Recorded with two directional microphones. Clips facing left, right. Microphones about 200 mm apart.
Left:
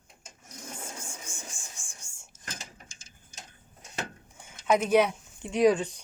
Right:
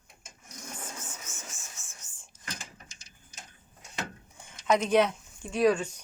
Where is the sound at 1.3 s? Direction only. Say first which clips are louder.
Left 2 dB; 15° left (ahead or behind).